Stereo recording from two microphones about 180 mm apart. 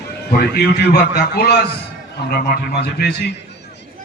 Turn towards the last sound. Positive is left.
turn(degrees=65)  # may be behind; listen again after turning